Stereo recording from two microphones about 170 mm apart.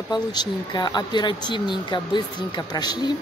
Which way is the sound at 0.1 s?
25° left (ahead or behind).